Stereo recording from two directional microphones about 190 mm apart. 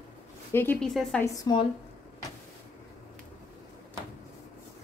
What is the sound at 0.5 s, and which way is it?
Speech, 10° left (ahead or behind).